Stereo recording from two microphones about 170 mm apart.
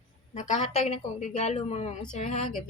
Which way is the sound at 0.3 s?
45° left (ahead or behind).